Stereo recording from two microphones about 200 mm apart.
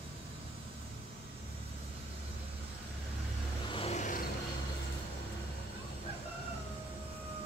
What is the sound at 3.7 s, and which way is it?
Vehicle, 30° left (ahead or behind).